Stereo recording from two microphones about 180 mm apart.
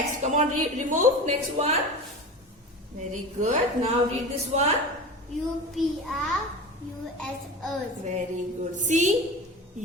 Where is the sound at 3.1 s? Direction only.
45° right (ahead or behind).